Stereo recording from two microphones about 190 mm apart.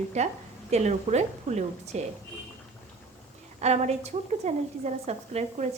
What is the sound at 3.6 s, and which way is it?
A woman's voice, 35° right (ahead or behind).